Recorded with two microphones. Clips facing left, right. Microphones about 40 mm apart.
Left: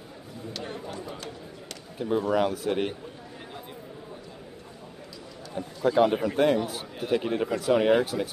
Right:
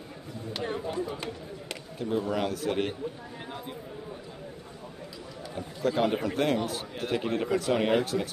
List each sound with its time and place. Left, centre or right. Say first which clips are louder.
0.5 s a sound: right 4 dB; centre
2.0 s speech: left 4 dB; centre
5.6 s speech: left 5 dB; centre